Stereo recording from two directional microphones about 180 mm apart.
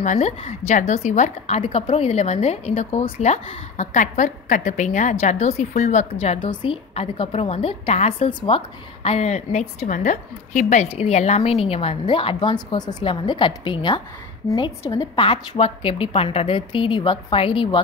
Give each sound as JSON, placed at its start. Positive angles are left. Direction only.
{"t": 0.0, "sound": "a woman's voice", "side_deg": 40}